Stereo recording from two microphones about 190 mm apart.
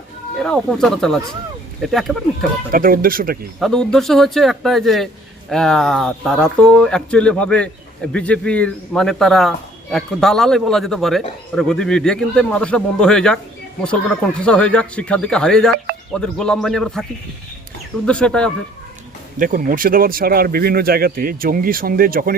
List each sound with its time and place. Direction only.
0.3 s a man's voice: centre (ahead or behind)
2.7 s speech: 50° right (ahead or behind)
3.6 s a man's voice: 5° left (ahead or behind)
19.4 s speech: 45° right (ahead or behind)